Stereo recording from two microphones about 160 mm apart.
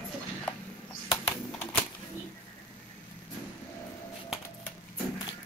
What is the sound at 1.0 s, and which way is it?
Typing, 25° left (ahead or behind).